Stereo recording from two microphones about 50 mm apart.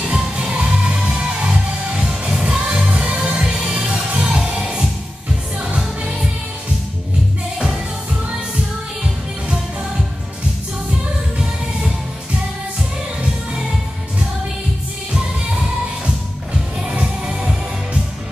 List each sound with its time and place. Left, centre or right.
0.1 s music: centre
9.0 s music: centre
15.1 s music: centre
16.8 s music: right